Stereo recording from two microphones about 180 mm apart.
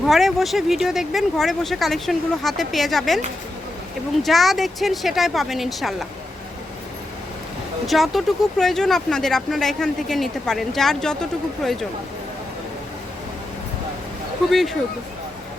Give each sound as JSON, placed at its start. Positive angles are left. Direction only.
{"t": 0.0, "sound": "speech", "side_deg": 0}
{"t": 4.2, "sound": "speech", "side_deg": 0}
{"t": 7.9, "sound": "speech", "side_deg": 0}
{"t": 14.5, "sound": "speech", "side_deg": 0}